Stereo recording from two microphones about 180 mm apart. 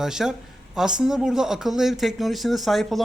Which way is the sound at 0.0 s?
5° right (ahead or behind).